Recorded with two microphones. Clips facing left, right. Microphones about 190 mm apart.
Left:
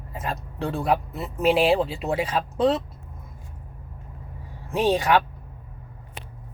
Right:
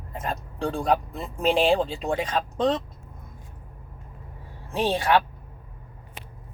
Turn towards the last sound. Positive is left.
turn(degrees=15)  # may be behind; listen again after turning